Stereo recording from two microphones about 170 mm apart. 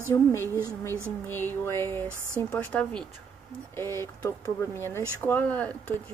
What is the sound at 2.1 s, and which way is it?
Speech, 15° right (ahead or behind).